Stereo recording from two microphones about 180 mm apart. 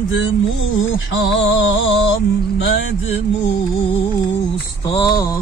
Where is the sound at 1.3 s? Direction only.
90° left.